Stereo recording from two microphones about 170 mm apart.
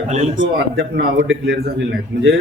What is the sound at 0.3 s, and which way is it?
A man's voice, 85° right.